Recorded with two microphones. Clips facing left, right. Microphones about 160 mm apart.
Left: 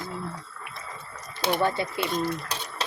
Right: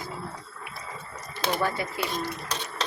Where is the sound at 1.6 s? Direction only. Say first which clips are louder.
Left 3 dB; 25° left (ahead or behind).